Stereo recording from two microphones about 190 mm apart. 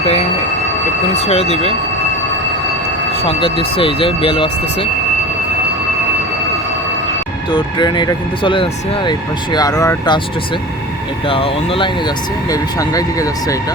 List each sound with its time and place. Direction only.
0.0 s speech: 35° left (ahead or behind)
3.2 s speech: 30° left (ahead or behind)
7.5 s speech: 25° left (ahead or behind)
11.3 s speech: 30° left (ahead or behind)
12.5 s speech: 20° left (ahead or behind)